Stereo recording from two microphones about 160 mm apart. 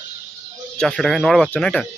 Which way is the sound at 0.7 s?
5° left (ahead or behind).